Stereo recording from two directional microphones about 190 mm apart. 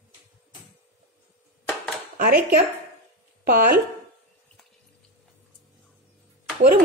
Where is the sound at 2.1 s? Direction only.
50° right (ahead or behind).